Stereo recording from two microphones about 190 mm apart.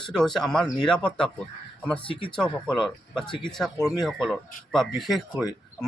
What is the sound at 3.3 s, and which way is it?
Speech, 25° left (ahead or behind).